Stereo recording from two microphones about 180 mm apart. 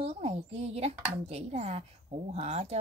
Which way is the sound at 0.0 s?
35° right (ahead or behind).